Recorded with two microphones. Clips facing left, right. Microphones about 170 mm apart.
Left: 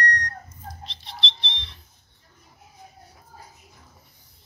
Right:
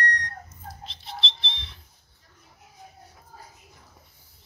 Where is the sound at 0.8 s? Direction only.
Centre (ahead or behind).